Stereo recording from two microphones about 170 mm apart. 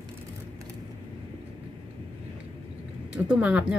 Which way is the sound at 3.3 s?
10° right (ahead or behind).